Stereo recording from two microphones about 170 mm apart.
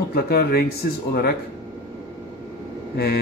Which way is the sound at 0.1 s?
65° left (ahead or behind).